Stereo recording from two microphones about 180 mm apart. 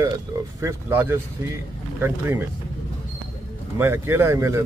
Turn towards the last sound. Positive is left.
turn(degrees=-15)  # may be behind; listen again after turning